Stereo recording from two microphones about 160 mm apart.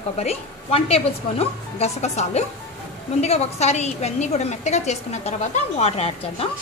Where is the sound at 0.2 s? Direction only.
40° left (ahead or behind).